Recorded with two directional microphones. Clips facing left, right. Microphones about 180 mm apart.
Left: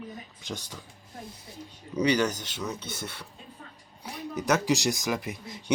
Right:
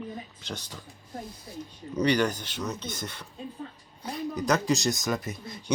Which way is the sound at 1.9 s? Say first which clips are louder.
Even; 10° left (ahead or behind).